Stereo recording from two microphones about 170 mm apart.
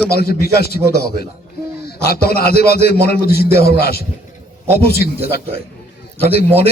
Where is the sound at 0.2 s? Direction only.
65° left (ahead or behind).